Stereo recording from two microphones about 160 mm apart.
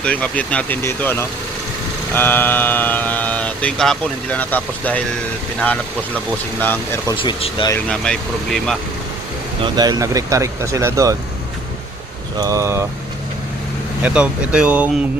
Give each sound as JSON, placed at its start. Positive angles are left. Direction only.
{"t": 0.0, "sound": "speech", "side_deg": 10}
{"t": 7.1, "sound": "speech", "side_deg": 30}
{"t": 7.9, "sound": "speech", "side_deg": 5}
{"t": 9.6, "sound": "speech", "side_deg": -30}
{"t": 12.4, "sound": "speech", "side_deg": -20}
{"t": 14.0, "sound": "speech", "side_deg": -5}